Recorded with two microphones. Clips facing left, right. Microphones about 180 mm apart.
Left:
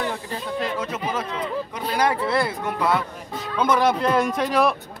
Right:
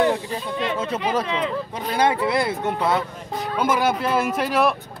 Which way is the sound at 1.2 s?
80° right.